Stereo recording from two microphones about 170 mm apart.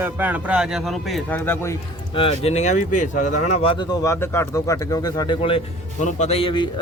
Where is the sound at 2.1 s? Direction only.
30° left (ahead or behind).